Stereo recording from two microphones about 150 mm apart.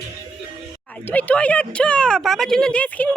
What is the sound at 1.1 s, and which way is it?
A woman's voice, 10° left (ahead or behind).